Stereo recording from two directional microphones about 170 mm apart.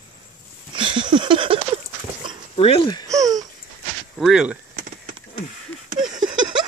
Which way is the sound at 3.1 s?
20° right (ahead or behind).